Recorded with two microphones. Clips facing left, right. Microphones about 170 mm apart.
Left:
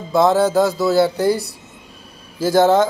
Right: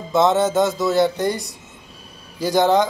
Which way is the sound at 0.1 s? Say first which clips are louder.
Left 2 dB; centre (ahead or behind).